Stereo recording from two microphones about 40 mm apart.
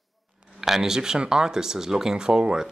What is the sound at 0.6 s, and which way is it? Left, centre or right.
Speech, centre.